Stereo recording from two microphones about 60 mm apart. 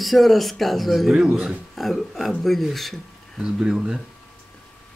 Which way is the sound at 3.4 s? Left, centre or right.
Centre.